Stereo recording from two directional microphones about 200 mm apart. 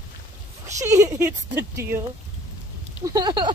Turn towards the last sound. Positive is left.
turn(degrees=-20)  # may be behind; listen again after turning